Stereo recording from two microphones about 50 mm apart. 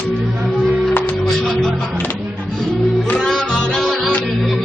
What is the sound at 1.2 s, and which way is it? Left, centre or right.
Music, centre.